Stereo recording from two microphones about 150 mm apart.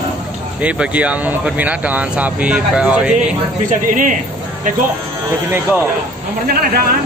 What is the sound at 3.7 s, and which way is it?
Speech, 60° right (ahead or behind).